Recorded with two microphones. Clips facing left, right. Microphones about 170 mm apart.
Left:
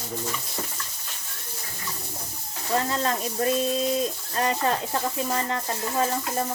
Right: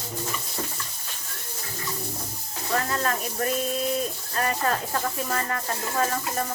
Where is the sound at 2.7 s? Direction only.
20° left (ahead or behind).